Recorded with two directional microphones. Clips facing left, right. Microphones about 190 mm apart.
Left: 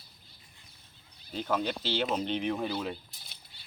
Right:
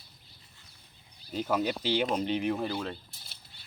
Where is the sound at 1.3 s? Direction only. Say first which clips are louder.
Right 2 dB; 5° right (ahead or behind).